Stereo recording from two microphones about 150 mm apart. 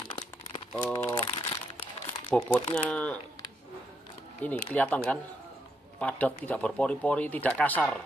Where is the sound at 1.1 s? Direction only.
35° left (ahead or behind).